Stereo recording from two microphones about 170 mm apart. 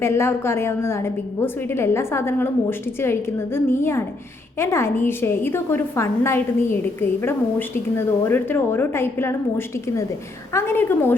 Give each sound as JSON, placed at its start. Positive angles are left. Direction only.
{"t": 0.0, "sound": "a woman's voice", "side_deg": 15}
{"t": 7.9, "sound": "a woman's voice", "side_deg": 15}